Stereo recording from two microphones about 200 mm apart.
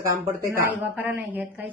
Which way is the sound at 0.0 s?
15° right (ahead or behind).